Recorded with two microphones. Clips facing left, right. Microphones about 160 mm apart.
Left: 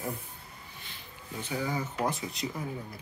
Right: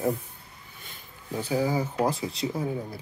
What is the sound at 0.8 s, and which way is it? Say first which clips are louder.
Speech: right 7 dB; 35° right (ahead or behind).